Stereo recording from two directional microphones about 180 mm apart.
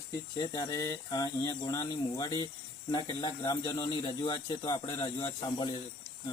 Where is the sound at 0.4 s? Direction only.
20° left (ahead or behind).